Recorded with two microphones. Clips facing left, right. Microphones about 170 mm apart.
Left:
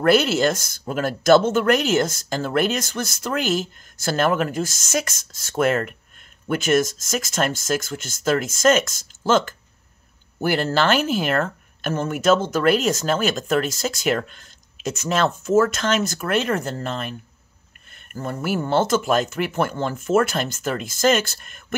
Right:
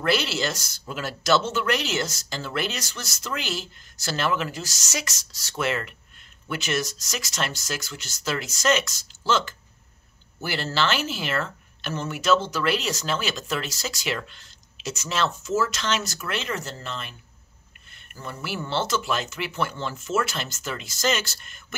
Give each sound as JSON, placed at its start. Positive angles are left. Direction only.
{"t": 0.0, "sound": "speech", "side_deg": 50}